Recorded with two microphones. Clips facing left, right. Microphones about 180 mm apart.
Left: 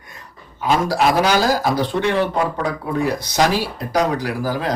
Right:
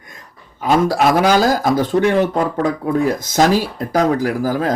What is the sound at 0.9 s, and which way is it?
Speech, 50° right (ahead or behind).